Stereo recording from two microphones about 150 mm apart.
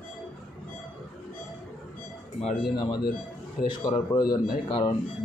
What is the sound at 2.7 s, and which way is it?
A man's voice, 30° left (ahead or behind).